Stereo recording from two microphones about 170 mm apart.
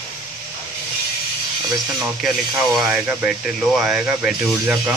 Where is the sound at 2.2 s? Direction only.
Centre (ahead or behind).